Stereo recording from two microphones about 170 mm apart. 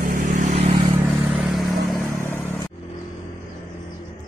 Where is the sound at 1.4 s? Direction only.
Centre (ahead or behind).